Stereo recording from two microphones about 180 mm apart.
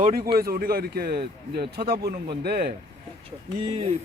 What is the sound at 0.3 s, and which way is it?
Speech, 55° right (ahead or behind).